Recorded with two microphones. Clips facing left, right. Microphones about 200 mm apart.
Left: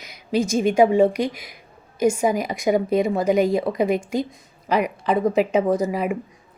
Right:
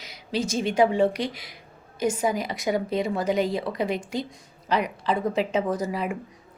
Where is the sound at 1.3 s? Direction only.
50° left (ahead or behind).